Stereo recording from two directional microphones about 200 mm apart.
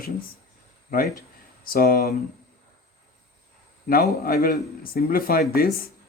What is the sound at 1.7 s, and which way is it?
Speech, 45° left (ahead or behind).